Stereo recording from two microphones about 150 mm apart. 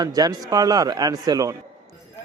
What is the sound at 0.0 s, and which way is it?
Speech, 25° right (ahead or behind).